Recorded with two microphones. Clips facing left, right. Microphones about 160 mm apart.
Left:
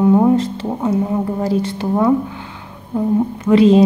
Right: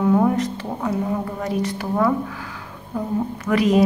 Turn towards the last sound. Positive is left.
turn(degrees=25)  # may be behind; listen again after turning